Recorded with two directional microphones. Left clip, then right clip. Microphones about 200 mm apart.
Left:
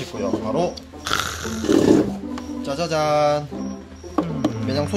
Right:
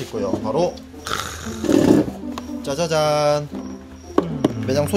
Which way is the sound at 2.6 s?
45° right (ahead or behind).